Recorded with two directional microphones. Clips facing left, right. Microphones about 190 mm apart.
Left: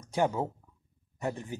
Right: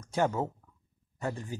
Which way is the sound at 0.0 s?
15° left (ahead or behind).